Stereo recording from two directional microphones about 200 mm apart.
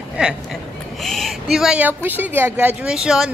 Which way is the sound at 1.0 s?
Centre (ahead or behind).